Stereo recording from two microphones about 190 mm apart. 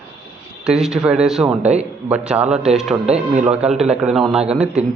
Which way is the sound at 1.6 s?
35° right (ahead or behind).